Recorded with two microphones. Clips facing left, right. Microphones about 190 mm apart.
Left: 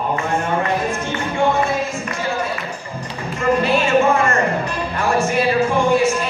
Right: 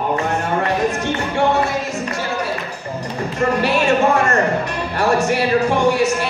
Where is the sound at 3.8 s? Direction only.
40° right (ahead or behind).